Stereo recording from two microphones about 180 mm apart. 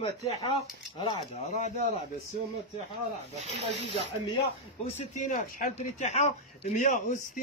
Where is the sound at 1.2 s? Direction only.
40° left (ahead or behind).